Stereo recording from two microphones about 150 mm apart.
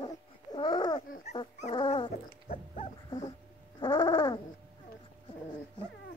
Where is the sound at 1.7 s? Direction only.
35° left (ahead or behind).